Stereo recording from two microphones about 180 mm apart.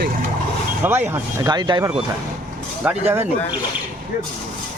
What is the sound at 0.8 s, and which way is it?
Speech, 10° right (ahead or behind).